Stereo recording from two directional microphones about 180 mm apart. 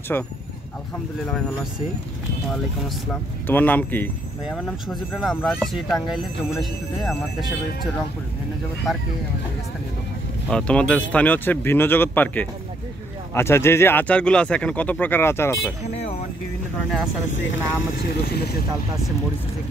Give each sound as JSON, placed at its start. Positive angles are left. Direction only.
{"t": 0.1, "sound": "speech", "side_deg": 10}
{"t": 3.1, "sound": "speech", "side_deg": 10}
{"t": 10.5, "sound": "speech", "side_deg": 5}
{"t": 17.3, "sound": "speech", "side_deg": 90}